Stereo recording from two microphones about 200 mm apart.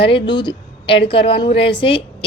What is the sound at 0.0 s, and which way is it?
A woman's voice, 25° left (ahead or behind).